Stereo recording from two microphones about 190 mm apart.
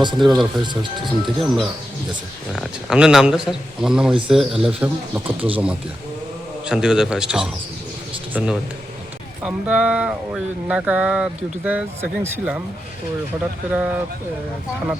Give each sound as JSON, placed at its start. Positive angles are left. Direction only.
{"t": 0.2, "sound": "speech", "side_deg": 0}
{"t": 0.6, "sound": "speech", "side_deg": -25}
{"t": 1.4, "sound": "speech", "side_deg": 0}
{"t": 6.7, "sound": "speech", "side_deg": -5}
{"t": 13.7, "sound": "speech", "side_deg": -10}